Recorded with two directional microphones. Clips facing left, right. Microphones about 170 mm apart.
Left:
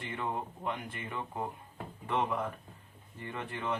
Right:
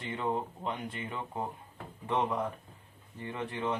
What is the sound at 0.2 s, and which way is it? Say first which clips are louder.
Speech: right 4 dB; 20° right (ahead or behind).